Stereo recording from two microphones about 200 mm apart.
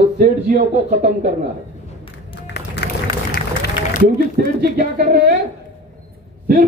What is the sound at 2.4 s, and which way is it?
Run, 55° left (ahead or behind).